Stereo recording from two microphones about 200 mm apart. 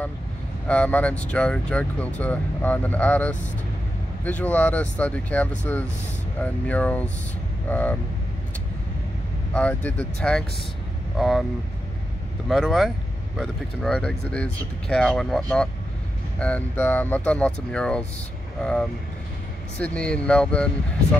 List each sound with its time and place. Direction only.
0.7 s speech: 5° left (ahead or behind)
9.5 s speech: 5° left (ahead or behind)
12.4 s speech: centre (ahead or behind)